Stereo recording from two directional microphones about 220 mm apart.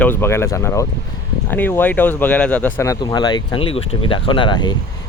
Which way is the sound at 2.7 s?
15° left (ahead or behind).